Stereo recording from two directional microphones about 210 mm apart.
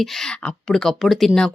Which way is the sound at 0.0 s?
5° left (ahead or behind).